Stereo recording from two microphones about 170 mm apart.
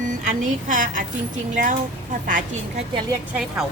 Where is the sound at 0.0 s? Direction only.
45° right (ahead or behind).